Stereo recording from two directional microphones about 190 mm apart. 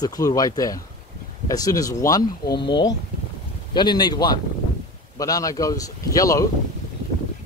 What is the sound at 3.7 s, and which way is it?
A man's voice, 20° left (ahead or behind).